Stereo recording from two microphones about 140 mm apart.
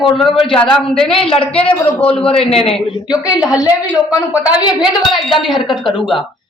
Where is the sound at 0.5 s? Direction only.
5° left (ahead or behind).